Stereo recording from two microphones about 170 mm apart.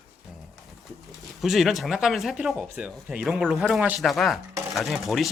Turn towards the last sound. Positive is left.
turn(degrees=0)  # may be behind; listen again after turning